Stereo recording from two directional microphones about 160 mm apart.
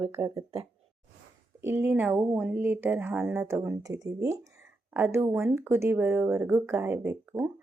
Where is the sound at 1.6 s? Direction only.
10° right (ahead or behind).